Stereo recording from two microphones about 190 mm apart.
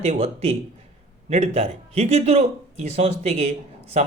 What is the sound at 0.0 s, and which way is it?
A man's voice, 35° right (ahead or behind).